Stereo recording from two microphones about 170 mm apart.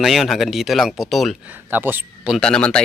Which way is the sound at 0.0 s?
Centre (ahead or behind).